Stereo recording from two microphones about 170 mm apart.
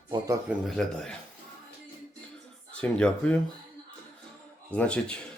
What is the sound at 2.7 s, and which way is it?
Speech, 5° left (ahead or behind).